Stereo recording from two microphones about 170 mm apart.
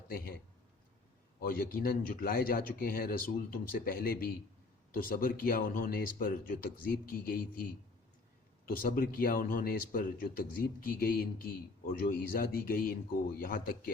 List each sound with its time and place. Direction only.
1.4 s speech: 60° left (ahead or behind)